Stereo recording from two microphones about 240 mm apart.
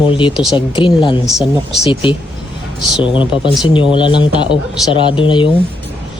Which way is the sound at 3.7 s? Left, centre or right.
Left.